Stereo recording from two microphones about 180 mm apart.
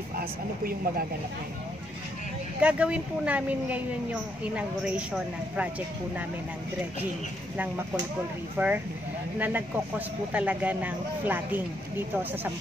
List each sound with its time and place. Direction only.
0.1 s speech: 55° right (ahead or behind)
2.6 s a woman's voice: 5° right (ahead or behind)
8.5 s a woman's voice: 10° right (ahead or behind)